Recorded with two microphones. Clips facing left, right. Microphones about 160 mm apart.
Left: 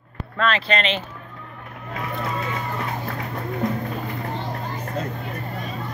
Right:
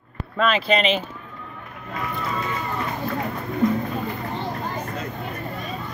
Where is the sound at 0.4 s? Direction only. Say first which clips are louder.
Right 2 dB; 5° right (ahead or behind).